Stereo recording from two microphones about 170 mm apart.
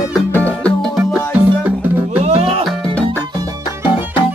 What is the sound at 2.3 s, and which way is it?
Music, 35° right (ahead or behind).